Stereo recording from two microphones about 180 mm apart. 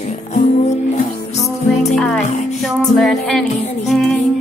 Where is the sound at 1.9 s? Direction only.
5° left (ahead or behind).